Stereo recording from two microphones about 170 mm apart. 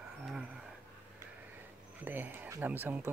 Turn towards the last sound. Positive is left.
turn(degrees=-10)  # may be behind; listen again after turning